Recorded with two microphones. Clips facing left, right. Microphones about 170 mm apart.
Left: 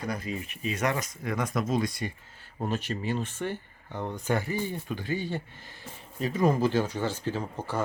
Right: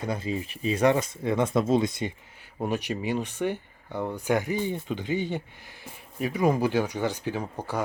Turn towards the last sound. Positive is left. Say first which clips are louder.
# right 1 dB
turn(degrees=-15)  # may be behind; listen again after turning